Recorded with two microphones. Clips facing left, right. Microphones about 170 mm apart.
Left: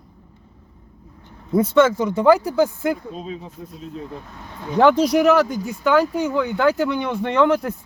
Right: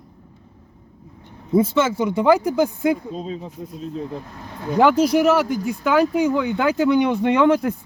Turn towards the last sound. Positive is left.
turn(degrees=-15)  # may be behind; listen again after turning